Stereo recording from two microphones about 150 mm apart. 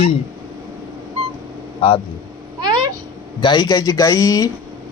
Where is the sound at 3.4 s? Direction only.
25° left (ahead or behind).